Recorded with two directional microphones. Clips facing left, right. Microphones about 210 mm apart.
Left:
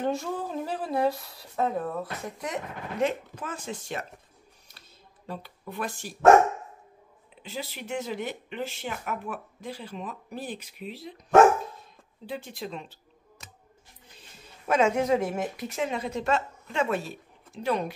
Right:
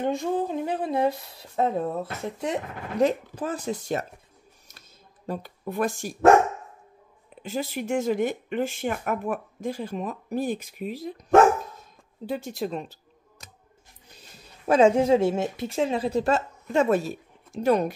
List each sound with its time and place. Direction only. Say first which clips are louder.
0.2 s speech: right 6 dB; 20° right (ahead or behind); by 4.0 s 40° right (ahead or behind)
4.6 s a sound: right 1 dB; 45° right (ahead or behind)
7.4 s speech: right 8 dB; 50° right (ahead or behind)
14.7 s a woman's voice: right 5 dB; 30° right (ahead or behind)